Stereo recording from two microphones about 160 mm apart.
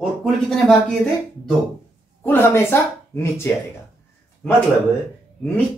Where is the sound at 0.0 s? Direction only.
Centre (ahead or behind).